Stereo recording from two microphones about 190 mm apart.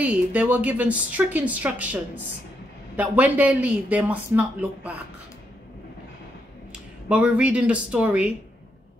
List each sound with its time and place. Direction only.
0.0 s a woman's voice: 10° right (ahead or behind)
7.1 s a woman's voice: 5° right (ahead or behind)